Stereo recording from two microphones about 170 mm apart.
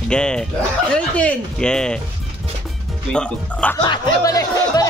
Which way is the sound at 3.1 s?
5° left (ahead or behind).